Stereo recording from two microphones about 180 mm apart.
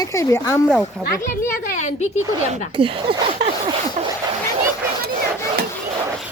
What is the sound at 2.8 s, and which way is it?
Speech, 30° right (ahead or behind).